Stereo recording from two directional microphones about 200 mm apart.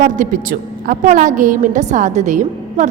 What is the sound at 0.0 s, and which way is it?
A woman's voice, 40° right (ahead or behind).